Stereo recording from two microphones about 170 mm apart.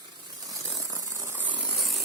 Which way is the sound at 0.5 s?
20° right (ahead or behind).